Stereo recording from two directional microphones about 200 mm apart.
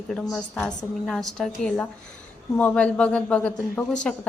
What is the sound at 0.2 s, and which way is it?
A woman's voice, centre (ahead or behind).